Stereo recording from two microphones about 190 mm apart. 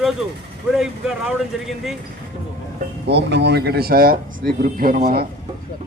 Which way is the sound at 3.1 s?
65° right (ahead or behind).